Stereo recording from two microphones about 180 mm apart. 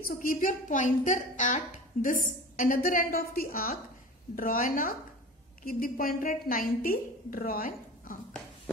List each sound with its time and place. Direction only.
0.0 s a woman's voice: 50° left (ahead or behind)